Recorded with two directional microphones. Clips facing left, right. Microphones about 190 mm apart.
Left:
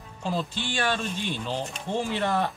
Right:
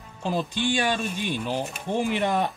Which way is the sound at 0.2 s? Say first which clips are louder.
Right 4 dB; 15° right (ahead or behind).